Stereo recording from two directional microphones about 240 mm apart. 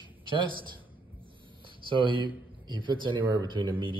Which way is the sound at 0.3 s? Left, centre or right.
Right.